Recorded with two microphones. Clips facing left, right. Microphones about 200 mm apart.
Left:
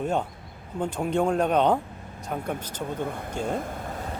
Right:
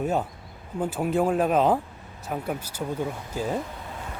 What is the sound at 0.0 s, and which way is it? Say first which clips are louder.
Speech: right 1 dB; 5° right (ahead or behind).